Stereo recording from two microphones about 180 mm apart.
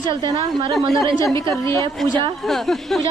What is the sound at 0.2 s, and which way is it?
Speech, 25° right (ahead or behind).